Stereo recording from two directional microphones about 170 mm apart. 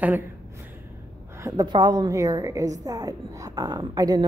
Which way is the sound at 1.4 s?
25° right (ahead or behind).